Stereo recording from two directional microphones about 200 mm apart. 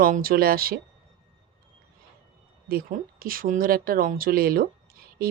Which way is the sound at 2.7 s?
45° right (ahead or behind).